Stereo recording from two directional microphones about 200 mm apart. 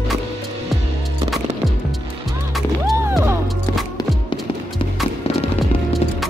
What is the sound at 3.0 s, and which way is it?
Music, 10° right (ahead or behind).